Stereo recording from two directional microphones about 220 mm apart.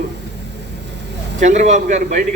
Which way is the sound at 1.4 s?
35° right (ahead or behind).